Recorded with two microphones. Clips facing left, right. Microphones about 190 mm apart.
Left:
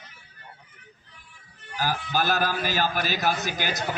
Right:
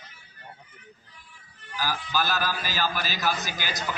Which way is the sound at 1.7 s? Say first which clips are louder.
Left 2 dB; 55° left (ahead or behind).